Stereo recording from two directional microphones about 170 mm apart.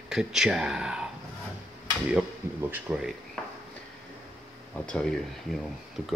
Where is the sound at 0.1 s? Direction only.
5° right (ahead or behind).